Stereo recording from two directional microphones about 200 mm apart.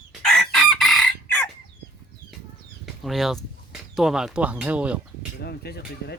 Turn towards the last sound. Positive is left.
turn(degrees=55)  # may be behind; listen again after turning